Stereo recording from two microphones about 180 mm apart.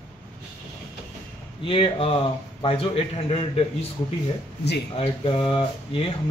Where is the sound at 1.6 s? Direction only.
30° left (ahead or behind).